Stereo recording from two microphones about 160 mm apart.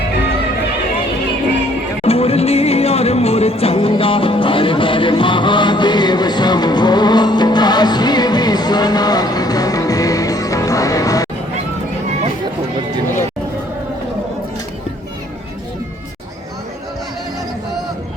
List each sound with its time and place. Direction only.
2.0 s music: 40° left (ahead or behind); by 11.3 s 20° left (ahead or behind)